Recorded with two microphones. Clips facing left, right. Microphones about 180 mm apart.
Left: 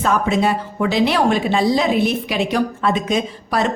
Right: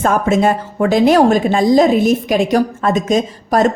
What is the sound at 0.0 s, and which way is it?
A woman's voice, 45° right (ahead or behind).